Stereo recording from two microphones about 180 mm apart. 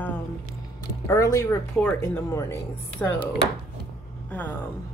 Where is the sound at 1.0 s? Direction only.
15° left (ahead or behind).